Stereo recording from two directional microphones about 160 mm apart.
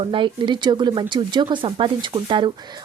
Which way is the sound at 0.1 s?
30° right (ahead or behind).